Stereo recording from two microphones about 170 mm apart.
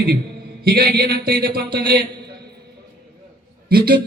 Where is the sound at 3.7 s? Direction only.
65° right (ahead or behind).